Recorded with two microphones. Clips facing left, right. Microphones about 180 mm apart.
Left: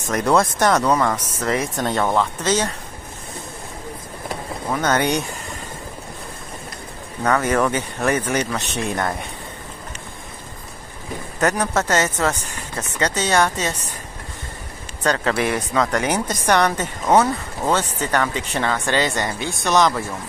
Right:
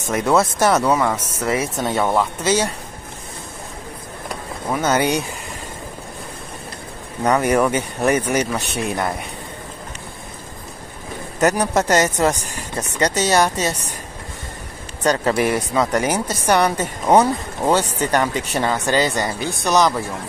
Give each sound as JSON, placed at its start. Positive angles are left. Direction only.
{"t": 0.1, "sound": "speech", "side_deg": -5}
{"t": 4.6, "sound": "speech", "side_deg": -5}
{"t": 7.2, "sound": "speech", "side_deg": -15}
{"t": 11.3, "sound": "speech", "side_deg": -10}
{"t": 15.0, "sound": "speech", "side_deg": -10}
{"t": 18.9, "sound": "speech", "side_deg": -35}
{"t": 19.5, "sound": "speech", "side_deg": 0}